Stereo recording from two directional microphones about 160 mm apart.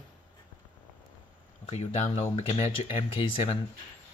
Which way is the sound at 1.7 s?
40° left (ahead or behind).